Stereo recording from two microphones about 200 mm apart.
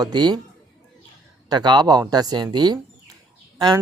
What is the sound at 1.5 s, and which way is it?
Speech, 20° right (ahead or behind).